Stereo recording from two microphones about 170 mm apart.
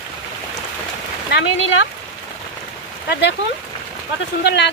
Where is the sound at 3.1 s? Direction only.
90° left.